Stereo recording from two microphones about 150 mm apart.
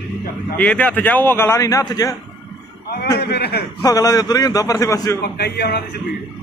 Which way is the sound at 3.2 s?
90° left.